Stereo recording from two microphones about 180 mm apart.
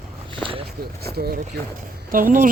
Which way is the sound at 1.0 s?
60° right (ahead or behind).